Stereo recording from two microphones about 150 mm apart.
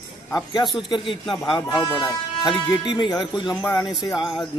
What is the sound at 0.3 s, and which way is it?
Speech, 30° left (ahead or behind).